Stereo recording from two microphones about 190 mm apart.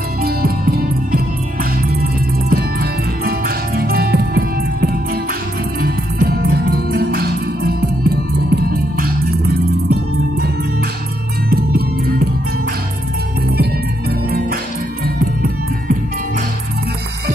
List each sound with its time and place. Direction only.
0.2 s music: 50° right (ahead or behind)
2.5 s music: 55° right (ahead or behind)